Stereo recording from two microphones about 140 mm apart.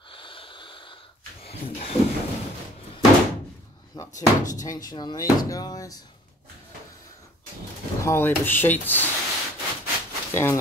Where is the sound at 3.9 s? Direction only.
30° left (ahead or behind).